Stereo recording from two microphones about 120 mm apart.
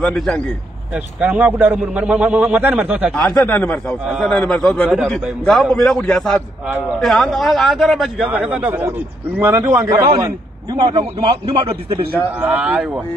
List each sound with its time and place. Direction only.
0.0 s a man's voice: 5° left (ahead or behind)
0.9 s a man's voice: 15° right (ahead or behind)
3.1 s a man's voice: 5° left (ahead or behind)
4.0 s a man's voice: 5° right (ahead or behind)
4.3 s a man's voice: 5° left (ahead or behind)
8.3 s a man's voice: 10° right (ahead or behind)
10.8 s a man's voice: 40° right (ahead or behind)
11.5 s a man's voice: 50° right (ahead or behind)
12.4 s a man's voice: 15° right (ahead or behind)